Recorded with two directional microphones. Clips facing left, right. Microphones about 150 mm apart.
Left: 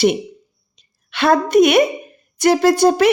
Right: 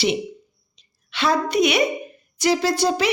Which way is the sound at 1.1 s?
55° left (ahead or behind).